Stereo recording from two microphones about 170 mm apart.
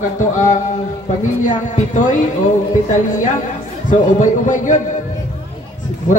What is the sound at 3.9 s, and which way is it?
Speech, 45° left (ahead or behind).